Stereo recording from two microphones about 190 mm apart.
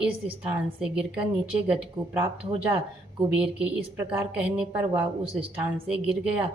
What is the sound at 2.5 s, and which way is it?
Speech, 30° right (ahead or behind).